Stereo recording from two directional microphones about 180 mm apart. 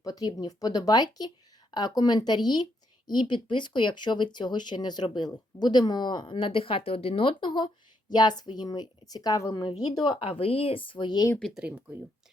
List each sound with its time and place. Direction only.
0.0 s speech: 20° left (ahead or behind)
11.3 s speech: centre (ahead or behind)